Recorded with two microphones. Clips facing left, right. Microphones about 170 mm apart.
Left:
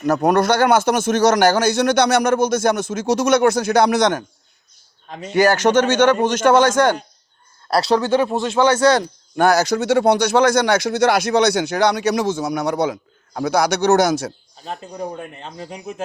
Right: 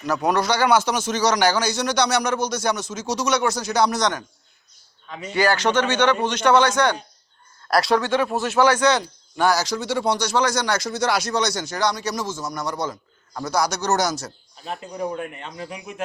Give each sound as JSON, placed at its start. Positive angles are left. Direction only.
{"t": 0.0, "sound": "speech", "side_deg": 50}
{"t": 5.0, "sound": "speech", "side_deg": 40}
{"t": 7.7, "sound": "speech", "side_deg": 30}
{"t": 8.8, "sound": "speech", "side_deg": 40}
{"t": 9.3, "sound": "speech", "side_deg": 55}
{"t": 15.4, "sound": "speech", "side_deg": 35}